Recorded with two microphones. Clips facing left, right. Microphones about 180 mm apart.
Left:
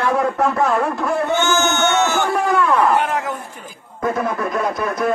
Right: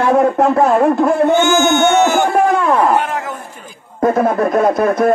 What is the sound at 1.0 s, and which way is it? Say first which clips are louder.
Speech: right 8 dB; 50° right (ahead or behind).